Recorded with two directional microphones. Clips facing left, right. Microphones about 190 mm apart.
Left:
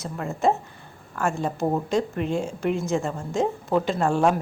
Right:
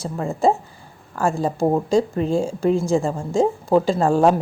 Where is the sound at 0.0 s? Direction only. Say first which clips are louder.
Right 4 dB; 30° right (ahead or behind).